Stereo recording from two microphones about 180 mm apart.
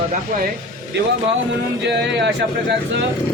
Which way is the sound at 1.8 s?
75° right (ahead or behind).